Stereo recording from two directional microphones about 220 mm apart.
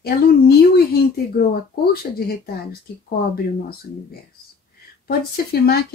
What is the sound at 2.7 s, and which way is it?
Speech, 45° left (ahead or behind).